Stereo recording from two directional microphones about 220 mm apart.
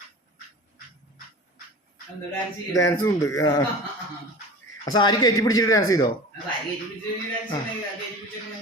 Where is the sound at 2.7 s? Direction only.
15° left (ahead or behind).